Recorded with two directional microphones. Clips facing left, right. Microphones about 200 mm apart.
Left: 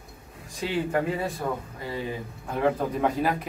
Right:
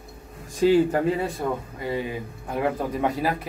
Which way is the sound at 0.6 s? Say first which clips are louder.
Right 8 dB; 40° right (ahead or behind).